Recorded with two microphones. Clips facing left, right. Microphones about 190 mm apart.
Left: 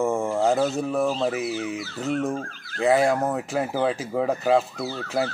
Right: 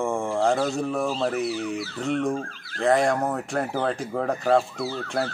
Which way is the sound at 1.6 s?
35° right (ahead or behind).